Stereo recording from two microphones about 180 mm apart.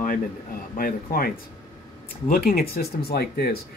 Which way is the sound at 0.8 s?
55° left (ahead or behind).